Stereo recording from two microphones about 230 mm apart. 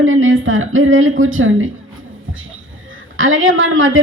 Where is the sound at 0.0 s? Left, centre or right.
Right.